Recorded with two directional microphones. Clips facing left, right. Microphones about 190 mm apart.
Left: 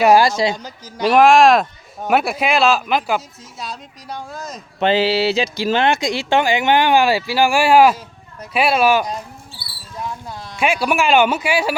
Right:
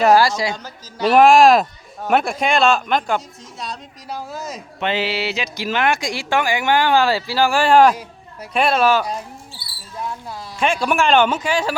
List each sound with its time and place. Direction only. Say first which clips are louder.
0.0 s speech: left 2 dB; 20° left (ahead or behind)
1.0 s speech: even; centre (ahead or behind)
4.8 s speech: left 6 dB; 30° left (ahead or behind); by 9.0 s 10° left (ahead or behind)
10.6 s speech: left 1 dB; 5° left (ahead or behind)